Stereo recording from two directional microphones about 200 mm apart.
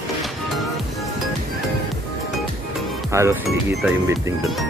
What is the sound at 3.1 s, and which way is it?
Speech, 15° right (ahead or behind).